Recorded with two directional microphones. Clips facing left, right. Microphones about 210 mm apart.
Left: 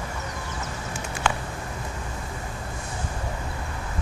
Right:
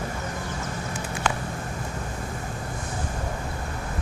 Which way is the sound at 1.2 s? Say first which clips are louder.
Left 1 dB; 40° right (ahead or behind).